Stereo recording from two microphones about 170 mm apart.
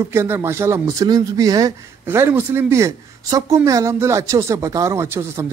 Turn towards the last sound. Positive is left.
turn(degrees=-15)  # may be behind; listen again after turning